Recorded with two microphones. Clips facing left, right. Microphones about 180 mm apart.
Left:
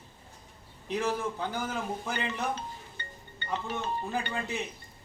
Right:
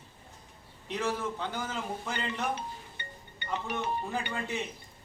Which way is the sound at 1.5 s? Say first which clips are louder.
Left 2 dB; 10° left (ahead or behind).